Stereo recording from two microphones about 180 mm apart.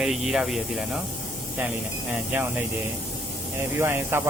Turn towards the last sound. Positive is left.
turn(degrees=-15)  # may be behind; listen again after turning